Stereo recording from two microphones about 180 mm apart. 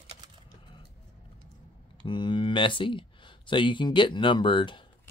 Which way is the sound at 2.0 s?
25° left (ahead or behind).